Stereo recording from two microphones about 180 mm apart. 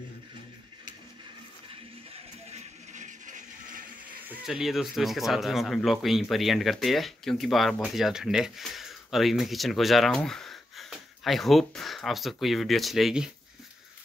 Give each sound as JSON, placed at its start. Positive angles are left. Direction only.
{"t": 2.5, "sound": "music", "side_deg": -40}
{"t": 4.2, "sound": "speech", "side_deg": -5}